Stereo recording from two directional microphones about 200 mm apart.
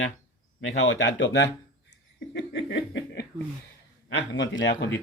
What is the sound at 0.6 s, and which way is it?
Speech, 70° left (ahead or behind).